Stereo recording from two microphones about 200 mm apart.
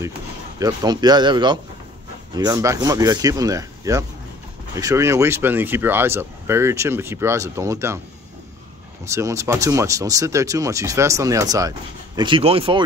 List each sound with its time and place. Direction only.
0.6 s a man's voice: 20° right (ahead or behind)
9.0 s a man's voice: 15° right (ahead or behind)